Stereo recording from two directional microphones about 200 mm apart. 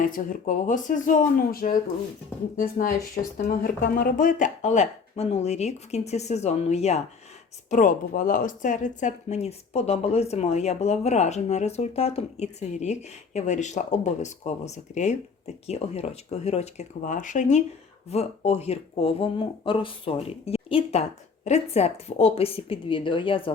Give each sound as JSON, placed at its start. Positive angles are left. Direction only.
{"t": 0.0, "sound": "a woman's voice", "side_deg": 40}